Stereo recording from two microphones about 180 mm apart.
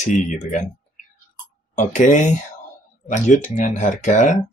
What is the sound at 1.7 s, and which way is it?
Speech, 45° left (ahead or behind).